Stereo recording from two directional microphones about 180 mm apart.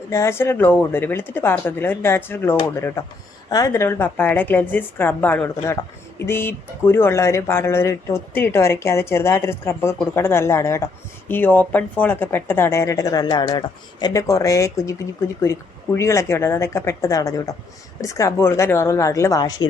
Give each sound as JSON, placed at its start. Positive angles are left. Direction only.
{"t": 0.1, "sound": "a woman's voice", "side_deg": 15}